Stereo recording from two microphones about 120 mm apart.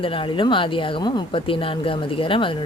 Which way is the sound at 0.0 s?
45° left (ahead or behind).